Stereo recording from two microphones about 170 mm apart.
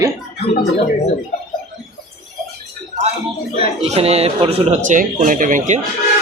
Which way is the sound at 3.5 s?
35° right (ahead or behind).